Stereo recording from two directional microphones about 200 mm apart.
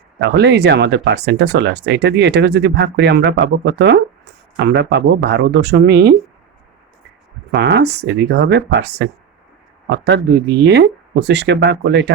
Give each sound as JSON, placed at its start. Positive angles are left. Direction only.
{"t": 0.2, "sound": "speech", "side_deg": -60}
{"t": 7.5, "sound": "speech", "side_deg": -60}